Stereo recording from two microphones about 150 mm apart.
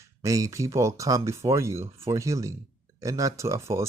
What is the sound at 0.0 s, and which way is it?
Speech, 20° right (ahead or behind).